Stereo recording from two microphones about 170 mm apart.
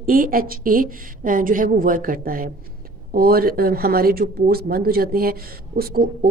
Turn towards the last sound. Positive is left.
turn(degrees=-60)  # may be behind; listen again after turning